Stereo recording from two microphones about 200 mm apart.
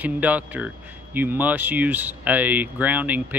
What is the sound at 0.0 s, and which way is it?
Speech, 5° right (ahead or behind).